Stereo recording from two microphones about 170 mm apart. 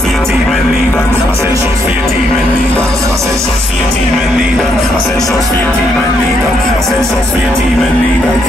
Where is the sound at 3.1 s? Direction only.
15° right (ahead or behind).